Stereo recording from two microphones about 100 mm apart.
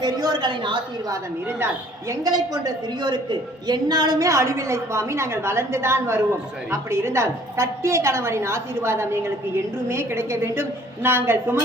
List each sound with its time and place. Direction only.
0.0 s a woman's voice: 45° right (ahead or behind)
2.0 s a woman's voice: 35° right (ahead or behind)